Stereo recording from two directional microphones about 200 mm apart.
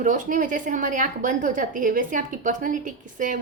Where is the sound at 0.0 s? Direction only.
40° right (ahead or behind).